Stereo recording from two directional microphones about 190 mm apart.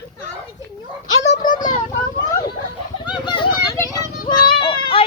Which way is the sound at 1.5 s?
20° left (ahead or behind).